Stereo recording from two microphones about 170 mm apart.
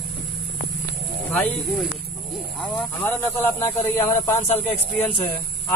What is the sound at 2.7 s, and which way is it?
Speech, 10° left (ahead or behind).